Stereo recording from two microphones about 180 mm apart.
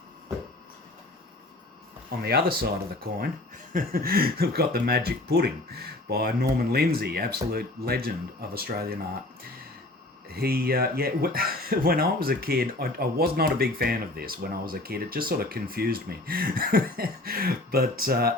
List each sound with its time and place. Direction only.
2.0 s speech: 60° right (ahead or behind)
10.2 s speech: 60° right (ahead or behind)